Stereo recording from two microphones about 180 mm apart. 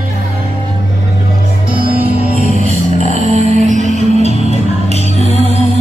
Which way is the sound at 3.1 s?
40° right (ahead or behind).